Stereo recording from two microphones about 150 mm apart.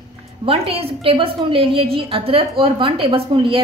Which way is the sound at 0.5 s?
40° right (ahead or behind).